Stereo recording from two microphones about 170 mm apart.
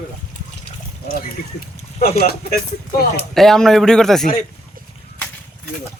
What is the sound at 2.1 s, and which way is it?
Speech, 65° left (ahead or behind).